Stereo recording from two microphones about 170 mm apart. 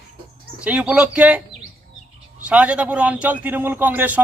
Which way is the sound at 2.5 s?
5° right (ahead or behind).